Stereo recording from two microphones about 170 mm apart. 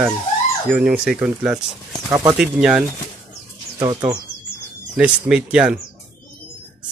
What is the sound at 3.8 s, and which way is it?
Speech, 25° right (ahead or behind).